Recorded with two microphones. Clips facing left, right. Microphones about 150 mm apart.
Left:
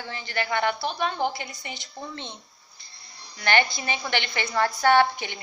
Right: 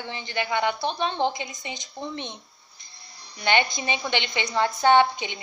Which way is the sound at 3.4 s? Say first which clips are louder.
Even; 20° right (ahead or behind).